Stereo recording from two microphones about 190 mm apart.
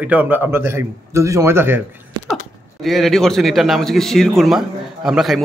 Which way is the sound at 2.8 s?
Centre (ahead or behind).